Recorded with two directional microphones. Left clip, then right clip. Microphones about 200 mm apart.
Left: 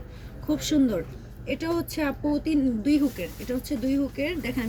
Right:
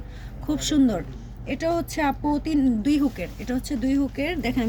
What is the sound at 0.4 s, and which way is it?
Speech, 55° right (ahead or behind).